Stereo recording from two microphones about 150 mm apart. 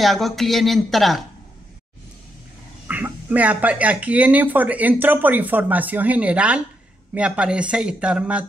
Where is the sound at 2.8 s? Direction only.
10° right (ahead or behind).